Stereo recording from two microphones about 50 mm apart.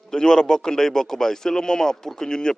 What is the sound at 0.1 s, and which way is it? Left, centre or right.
A man's voice, centre.